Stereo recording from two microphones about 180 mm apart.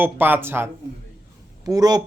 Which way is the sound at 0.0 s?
10° right (ahead or behind).